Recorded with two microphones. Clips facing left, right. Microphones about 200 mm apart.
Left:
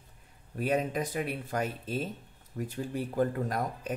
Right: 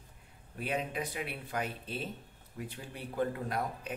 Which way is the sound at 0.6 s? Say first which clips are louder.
Left 6 dB; 45° left (ahead or behind).